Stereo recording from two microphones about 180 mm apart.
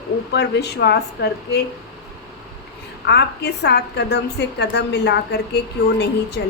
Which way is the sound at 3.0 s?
65° left (ahead or behind).